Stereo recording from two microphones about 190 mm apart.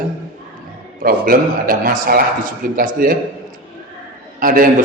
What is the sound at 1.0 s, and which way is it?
A man's voice, 50° right (ahead or behind).